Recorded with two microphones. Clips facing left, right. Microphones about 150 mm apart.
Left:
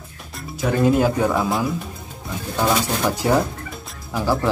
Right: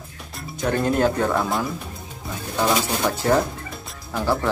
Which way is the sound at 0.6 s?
5° left (ahead or behind).